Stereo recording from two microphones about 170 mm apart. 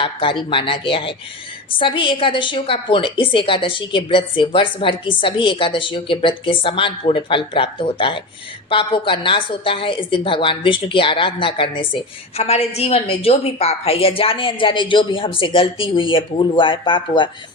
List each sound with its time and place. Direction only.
0.0 s a woman's voice: 30° left (ahead or behind)